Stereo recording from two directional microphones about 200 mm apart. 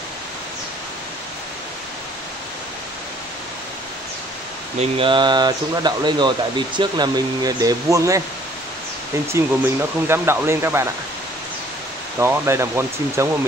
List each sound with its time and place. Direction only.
4.7 s speech: 25° right (ahead or behind)
9.3 s speech: 10° right (ahead or behind)
12.2 s speech: 15° right (ahead or behind)